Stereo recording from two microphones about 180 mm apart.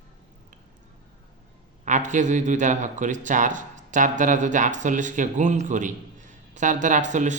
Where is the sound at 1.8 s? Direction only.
45° right (ahead or behind).